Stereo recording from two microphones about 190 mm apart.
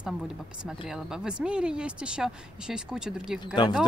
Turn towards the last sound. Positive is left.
turn(degrees=25)  # may be behind; listen again after turning